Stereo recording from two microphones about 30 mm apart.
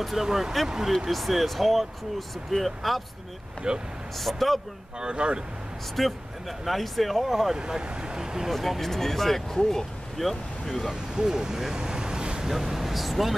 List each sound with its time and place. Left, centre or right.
0.2 s speech: centre
1.1 s speech: centre
3.6 s speech: right
4.2 s speech: centre
5.0 s speech: right
5.9 s speech: centre
7.5 s speech: right
8.5 s speech: centre
10.9 s speech: right
12.4 s speech: centre